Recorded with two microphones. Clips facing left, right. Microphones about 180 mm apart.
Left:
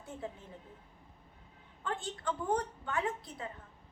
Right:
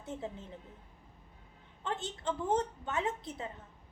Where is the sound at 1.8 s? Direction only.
25° right (ahead or behind).